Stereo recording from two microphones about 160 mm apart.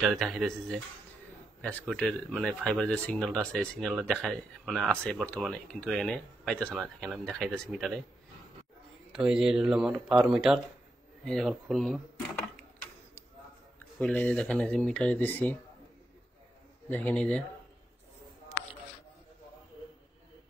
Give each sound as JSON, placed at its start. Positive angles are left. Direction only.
{"t": 0.0, "sound": "speech", "side_deg": 0}
{"t": 9.1, "sound": "speech", "side_deg": -5}
{"t": 13.9, "sound": "speech", "side_deg": 5}
{"t": 16.9, "sound": "speech", "side_deg": 10}